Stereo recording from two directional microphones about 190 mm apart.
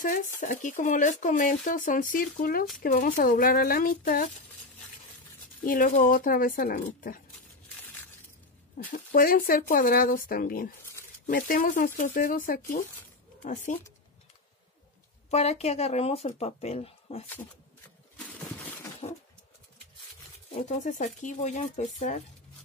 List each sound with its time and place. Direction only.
0.0 s speech: 45° left (ahead or behind)
5.6 s speech: 50° left (ahead or behind)
8.7 s speech: 45° left (ahead or behind)
15.2 s speech: 35° left (ahead or behind)
19.0 s a sound: 25° left (ahead or behind)
20.6 s speech: 40° left (ahead or behind)